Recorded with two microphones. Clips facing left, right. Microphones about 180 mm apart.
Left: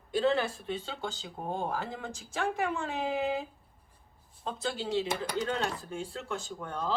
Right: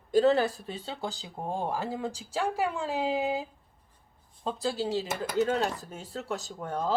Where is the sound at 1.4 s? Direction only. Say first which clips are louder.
Right 2 dB; 25° right (ahead or behind).